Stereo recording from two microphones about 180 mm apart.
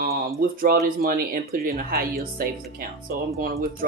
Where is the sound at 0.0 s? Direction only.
55° right (ahead or behind).